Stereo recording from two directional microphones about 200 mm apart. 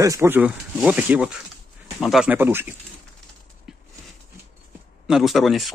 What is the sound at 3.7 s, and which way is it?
Horse, centre (ahead or behind).